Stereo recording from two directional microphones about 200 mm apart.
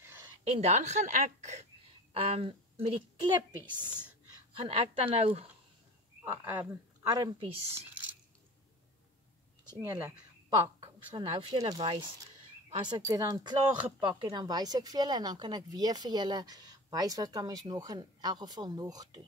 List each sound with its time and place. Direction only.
0.5 s a woman's voice: 35° right (ahead or behind)
4.6 s speech: 30° right (ahead or behind)
6.2 s a woman's voice: 10° right (ahead or behind); by 7.8 s 25° right (ahead or behind)
9.8 s a woman's voice: 10° right (ahead or behind)
11.1 s a woman's voice: 25° right (ahead or behind)